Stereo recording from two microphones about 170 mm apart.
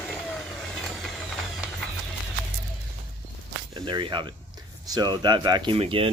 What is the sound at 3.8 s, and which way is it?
Snake, 25° right (ahead or behind).